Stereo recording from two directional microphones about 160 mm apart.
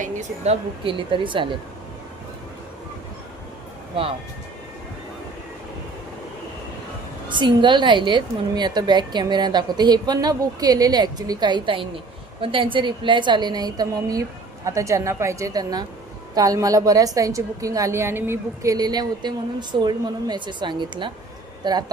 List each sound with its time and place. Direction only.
0.0 s a woman's voice: 50° right (ahead or behind)
0.9 s speech: 30° right (ahead or behind)
7.3 s a woman's voice: 30° right (ahead or behind)